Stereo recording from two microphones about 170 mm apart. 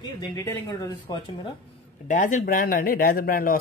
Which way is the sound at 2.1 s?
50° left (ahead or behind).